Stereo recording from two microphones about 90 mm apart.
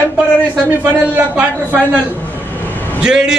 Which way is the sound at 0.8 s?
20° right (ahead or behind).